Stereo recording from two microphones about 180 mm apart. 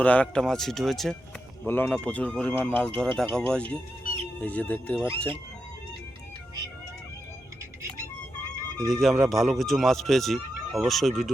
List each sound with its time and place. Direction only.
0.0 s speech: 5° left (ahead or behind)
1.6 s speech: 10° left (ahead or behind)
4.0 s music: 30° right (ahead or behind)
4.4 s speech: 10° left (ahead or behind)
8.9 s speech: centre (ahead or behind)